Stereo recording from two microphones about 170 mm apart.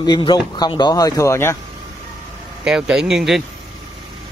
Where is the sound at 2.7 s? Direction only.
5° right (ahead or behind).